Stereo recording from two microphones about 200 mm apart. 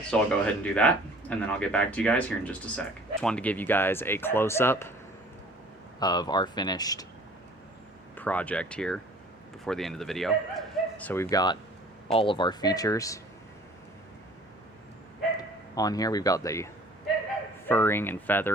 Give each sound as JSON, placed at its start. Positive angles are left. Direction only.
{"t": 0.1, "sound": "speech", "side_deg": 5}
{"t": 6.0, "sound": "speech", "side_deg": 20}
{"t": 8.1, "sound": "speech", "side_deg": 10}
{"t": 15.4, "sound": "speech", "side_deg": 20}
{"t": 17.7, "sound": "speech", "side_deg": 10}